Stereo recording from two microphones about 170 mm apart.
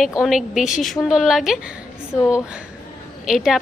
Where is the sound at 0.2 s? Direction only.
Centre (ahead or behind).